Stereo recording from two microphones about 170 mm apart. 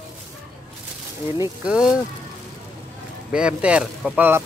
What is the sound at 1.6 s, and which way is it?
Speech, 5° right (ahead or behind).